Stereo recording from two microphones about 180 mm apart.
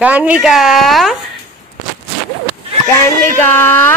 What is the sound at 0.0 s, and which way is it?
Speech, 10° right (ahead or behind).